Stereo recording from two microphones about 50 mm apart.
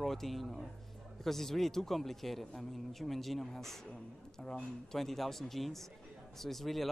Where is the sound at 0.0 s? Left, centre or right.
Centre.